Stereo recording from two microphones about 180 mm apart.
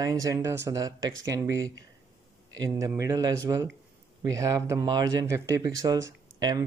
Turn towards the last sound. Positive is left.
turn(degrees=-20)  # may be behind; listen again after turning